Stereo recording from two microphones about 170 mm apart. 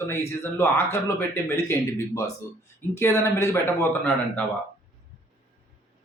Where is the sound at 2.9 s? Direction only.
15° left (ahead or behind).